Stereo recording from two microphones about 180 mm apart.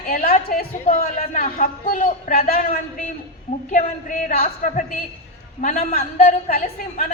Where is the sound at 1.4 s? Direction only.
55° left (ahead or behind).